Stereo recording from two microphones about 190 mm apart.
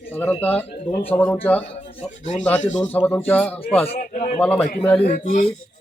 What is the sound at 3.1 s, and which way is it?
Speech, 10° left (ahead or behind).